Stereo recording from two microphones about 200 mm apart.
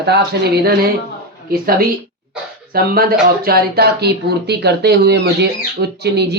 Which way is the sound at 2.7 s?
50° right (ahead or behind).